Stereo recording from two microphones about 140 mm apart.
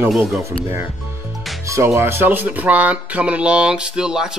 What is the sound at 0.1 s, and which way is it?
Speech, centre (ahead or behind).